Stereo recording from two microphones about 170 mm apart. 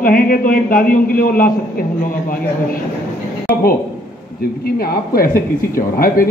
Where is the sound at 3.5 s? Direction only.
60° left (ahead or behind).